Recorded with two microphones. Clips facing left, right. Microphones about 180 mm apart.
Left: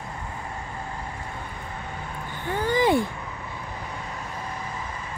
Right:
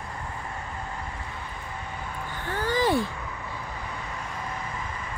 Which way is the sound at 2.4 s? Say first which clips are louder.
Left 3 dB; 15° left (ahead or behind).